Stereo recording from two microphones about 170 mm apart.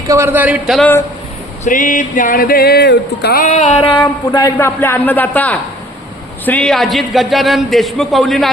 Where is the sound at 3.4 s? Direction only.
45° left (ahead or behind).